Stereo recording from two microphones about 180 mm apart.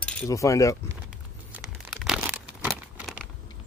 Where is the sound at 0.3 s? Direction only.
15° left (ahead or behind).